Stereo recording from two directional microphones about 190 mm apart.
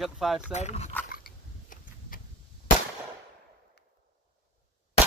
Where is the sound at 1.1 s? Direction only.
50° left (ahead or behind).